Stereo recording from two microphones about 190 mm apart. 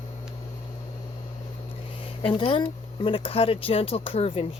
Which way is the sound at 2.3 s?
25° left (ahead or behind).